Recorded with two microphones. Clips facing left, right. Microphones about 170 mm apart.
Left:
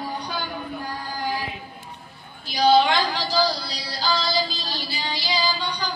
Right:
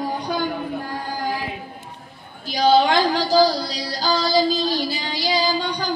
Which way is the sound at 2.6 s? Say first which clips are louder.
Right 2 dB; 40° right (ahead or behind).